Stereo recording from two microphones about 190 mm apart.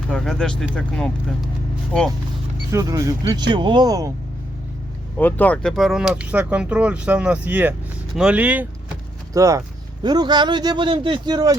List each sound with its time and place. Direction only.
0.1 s speech: 5° left (ahead or behind)
2.7 s speech: 15° right (ahead or behind)
5.1 s speech: 10° left (ahead or behind); by 11.5 s 20° right (ahead or behind)